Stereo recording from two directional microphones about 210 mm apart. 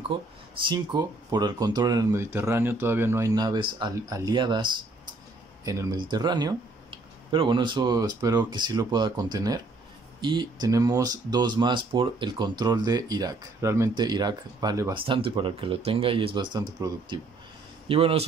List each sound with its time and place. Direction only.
0.1 s speech: 25° right (ahead or behind)